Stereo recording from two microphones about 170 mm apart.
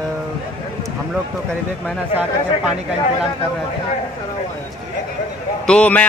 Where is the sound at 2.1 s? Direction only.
10° right (ahead or behind).